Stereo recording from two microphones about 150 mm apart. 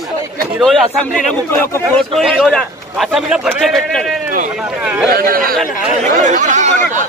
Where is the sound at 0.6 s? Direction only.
Centre (ahead or behind).